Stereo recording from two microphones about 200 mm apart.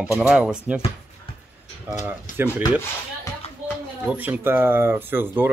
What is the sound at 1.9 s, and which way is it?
Speech, 10° right (ahead or behind).